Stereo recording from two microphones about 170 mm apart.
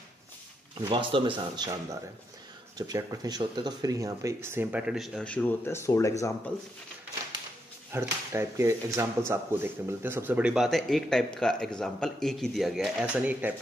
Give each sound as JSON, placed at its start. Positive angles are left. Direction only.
{"t": 0.7, "sound": "speech", "side_deg": -30}
{"t": 7.9, "sound": "speech", "side_deg": -15}